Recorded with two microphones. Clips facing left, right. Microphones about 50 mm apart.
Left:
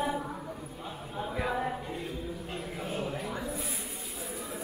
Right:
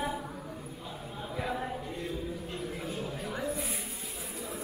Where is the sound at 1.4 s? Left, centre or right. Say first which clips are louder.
Left 3 dB; centre.